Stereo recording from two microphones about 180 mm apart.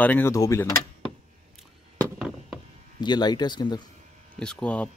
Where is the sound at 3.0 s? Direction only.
25° left (ahead or behind).